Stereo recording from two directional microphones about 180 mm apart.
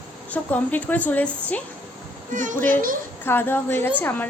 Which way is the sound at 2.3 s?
45° right (ahead or behind).